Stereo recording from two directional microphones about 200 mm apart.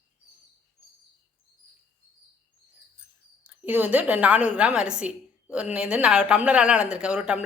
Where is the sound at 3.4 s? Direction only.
10° right (ahead or behind).